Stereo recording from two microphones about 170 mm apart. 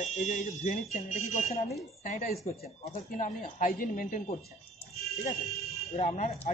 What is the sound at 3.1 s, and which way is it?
Speech, 50° left (ahead or behind).